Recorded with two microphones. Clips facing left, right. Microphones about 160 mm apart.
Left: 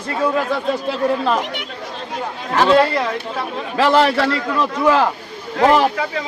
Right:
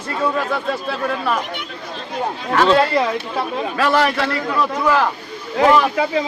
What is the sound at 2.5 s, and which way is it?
A man's voice, 20° left (ahead or behind).